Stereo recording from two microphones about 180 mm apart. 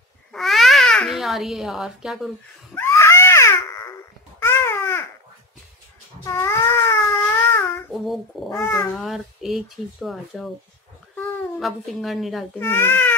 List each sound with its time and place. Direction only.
0.3 s babbling: centre (ahead or behind)
2.7 s baby cry: 15° left (ahead or behind)
4.4 s babbling: 15° left (ahead or behind)
6.2 s a sound: 15° left (ahead or behind)
7.9 s child singing: centre (ahead or behind)
8.5 s speech: 10° left (ahead or behind)
8.9 s speech: centre (ahead or behind)
11.5 s speech: centre (ahead or behind)
12.5 s speech: 10° left (ahead or behind)